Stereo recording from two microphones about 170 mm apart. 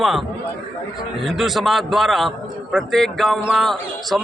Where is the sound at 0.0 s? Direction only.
Centre (ahead or behind).